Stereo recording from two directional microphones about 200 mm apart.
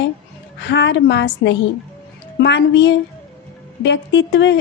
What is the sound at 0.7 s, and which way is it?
A woman's voice, 60° left (ahead or behind).